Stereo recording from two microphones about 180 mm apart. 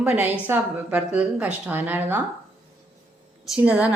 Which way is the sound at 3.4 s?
5° right (ahead or behind).